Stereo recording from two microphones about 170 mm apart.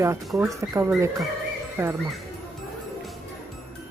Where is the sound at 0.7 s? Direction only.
15° right (ahead or behind).